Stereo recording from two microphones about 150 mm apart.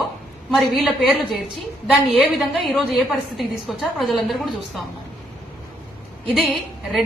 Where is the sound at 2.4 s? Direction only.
Centre (ahead or behind).